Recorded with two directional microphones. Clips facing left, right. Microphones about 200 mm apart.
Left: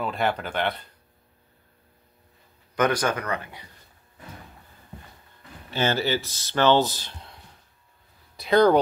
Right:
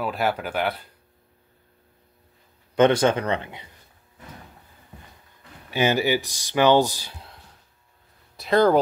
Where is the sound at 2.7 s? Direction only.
25° right (ahead or behind).